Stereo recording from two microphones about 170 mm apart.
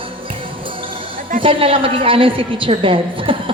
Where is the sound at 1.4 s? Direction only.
35° right (ahead or behind).